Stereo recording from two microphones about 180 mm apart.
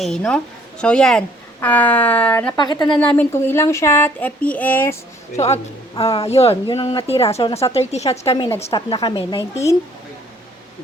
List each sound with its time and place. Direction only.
0.0 s a woman's voice: 5° left (ahead or behind)
2.6 s a woman's voice: 25° left (ahead or behind)
3.2 s speech: 15° left (ahead or behind)
5.5 s a woman's voice: 35° left (ahead or behind)